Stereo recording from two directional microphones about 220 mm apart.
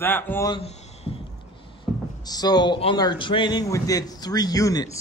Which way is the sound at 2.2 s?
20° left (ahead or behind).